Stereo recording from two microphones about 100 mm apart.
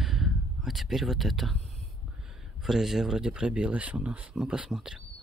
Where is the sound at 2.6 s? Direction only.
5° right (ahead or behind).